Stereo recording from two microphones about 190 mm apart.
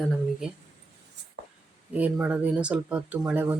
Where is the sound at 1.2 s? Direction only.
60° right (ahead or behind).